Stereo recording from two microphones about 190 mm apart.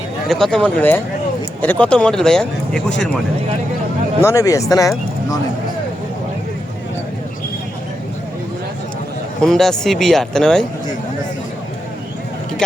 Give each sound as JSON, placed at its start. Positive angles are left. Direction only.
{"t": 0.3, "sound": "speech", "side_deg": 0}
{"t": 4.2, "sound": "speech", "side_deg": 15}
{"t": 9.4, "sound": "speech", "side_deg": 0}